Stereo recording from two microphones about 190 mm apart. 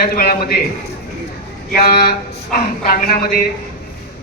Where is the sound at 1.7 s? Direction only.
50° left (ahead or behind).